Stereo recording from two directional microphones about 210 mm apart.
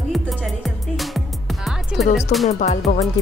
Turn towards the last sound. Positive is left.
turn(degrees=35)  # may be behind; listen again after turning